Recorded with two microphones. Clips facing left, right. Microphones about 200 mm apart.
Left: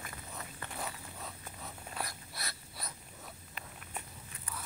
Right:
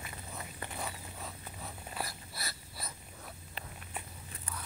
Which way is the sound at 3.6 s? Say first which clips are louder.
Right 3 dB; 30° right (ahead or behind).